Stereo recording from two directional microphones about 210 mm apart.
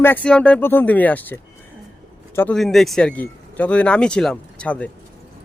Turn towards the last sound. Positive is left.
turn(degrees=5)  # may be behind; listen again after turning